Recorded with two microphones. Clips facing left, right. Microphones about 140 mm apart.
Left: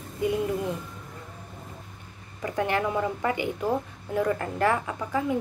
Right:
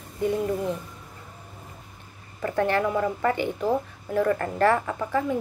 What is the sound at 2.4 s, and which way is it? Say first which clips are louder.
Speech: right 3 dB; 15° left (ahead or behind).